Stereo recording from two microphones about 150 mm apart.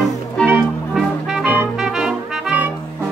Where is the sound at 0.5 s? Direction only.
5° right (ahead or behind).